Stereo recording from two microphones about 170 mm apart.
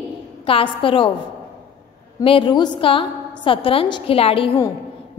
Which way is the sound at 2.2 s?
30° left (ahead or behind).